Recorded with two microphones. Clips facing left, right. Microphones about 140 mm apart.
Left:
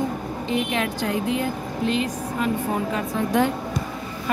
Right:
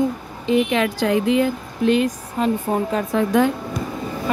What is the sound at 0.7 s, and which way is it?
Speech, 90° right.